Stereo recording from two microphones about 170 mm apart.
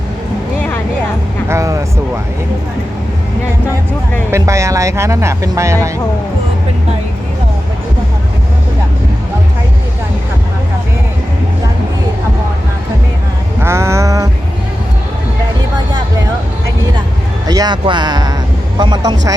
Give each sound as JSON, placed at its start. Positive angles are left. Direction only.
{"t": 1.5, "sound": "music", "side_deg": -15}
{"t": 4.3, "sound": "speech", "side_deg": -15}
{"t": 13.6, "sound": "a sound", "side_deg": -15}
{"t": 17.4, "sound": "speech", "side_deg": -20}